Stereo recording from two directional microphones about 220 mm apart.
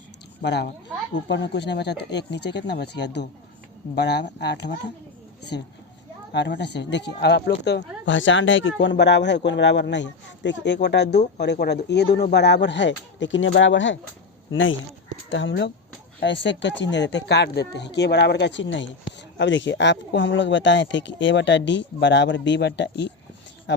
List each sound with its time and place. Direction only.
0.4 s speech: 50° left (ahead or behind)
6.3 s speech: 50° left (ahead or behind)